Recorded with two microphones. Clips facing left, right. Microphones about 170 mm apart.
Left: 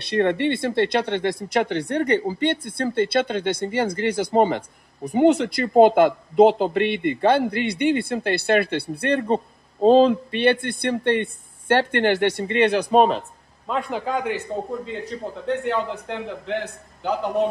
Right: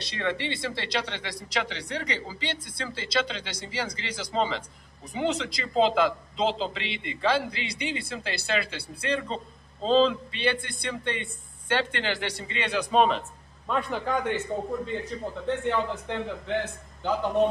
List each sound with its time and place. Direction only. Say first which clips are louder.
0.0 s speech: left 10 dB; 55° left (ahead or behind)
12.9 s speech: left 3 dB; 40° left (ahead or behind)
13.7 s a man's voice: left 3 dB; 20° left (ahead or behind)
14.9 s speech: left 2 dB; centre (ahead or behind)